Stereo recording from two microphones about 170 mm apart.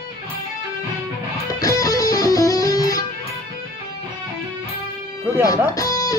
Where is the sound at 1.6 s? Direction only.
20° left (ahead or behind).